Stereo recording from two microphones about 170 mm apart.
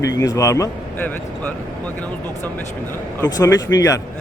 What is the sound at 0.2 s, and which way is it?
A man's voice, 20° left (ahead or behind).